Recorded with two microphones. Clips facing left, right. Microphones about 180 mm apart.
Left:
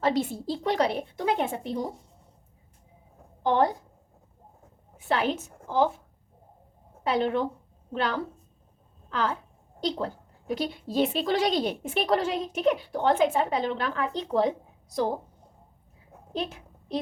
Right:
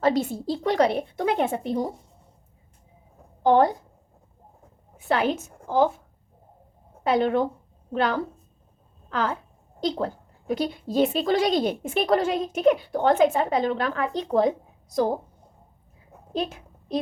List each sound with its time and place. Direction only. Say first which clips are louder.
0.0 s a woman's voice: right 3 dB; 45° right (ahead or behind)
4.9 s a woman's voice: right 3 dB; 45° right (ahead or behind)
7.1 s a woman's voice: right 4 dB; 45° right (ahead or behind)
16.3 s a sound: right 4 dB; 40° right (ahead or behind)